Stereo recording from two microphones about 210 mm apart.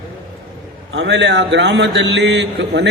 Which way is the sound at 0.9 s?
55° right (ahead or behind).